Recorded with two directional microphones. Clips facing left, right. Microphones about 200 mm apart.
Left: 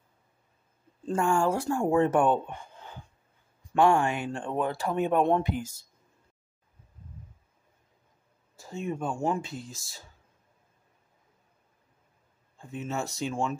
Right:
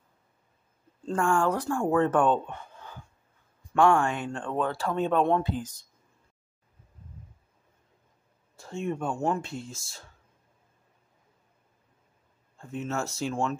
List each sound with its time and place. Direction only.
1.0 s speech: 10° left (ahead or behind)
1.5 s speech: 25° left (ahead or behind)
1.9 s speech: 10° left (ahead or behind)
4.0 s speech: 10° left (ahead or behind)
8.5 s speech: centre (ahead or behind)
12.5 s speech: 5° left (ahead or behind)